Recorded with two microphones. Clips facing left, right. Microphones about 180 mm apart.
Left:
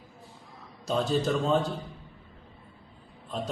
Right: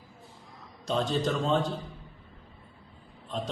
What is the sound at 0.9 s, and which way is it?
Speech, 10° left (ahead or behind).